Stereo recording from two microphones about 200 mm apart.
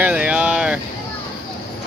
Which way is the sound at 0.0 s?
5° right (ahead or behind).